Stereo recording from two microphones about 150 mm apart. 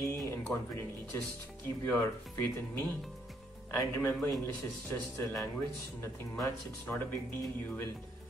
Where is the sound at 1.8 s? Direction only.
15° left (ahead or behind).